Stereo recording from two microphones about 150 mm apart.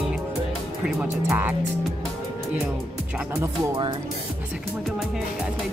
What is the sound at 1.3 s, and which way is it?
Speech, 15° right (ahead or behind).